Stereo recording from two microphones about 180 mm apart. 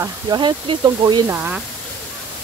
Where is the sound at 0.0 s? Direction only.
25° right (ahead or behind).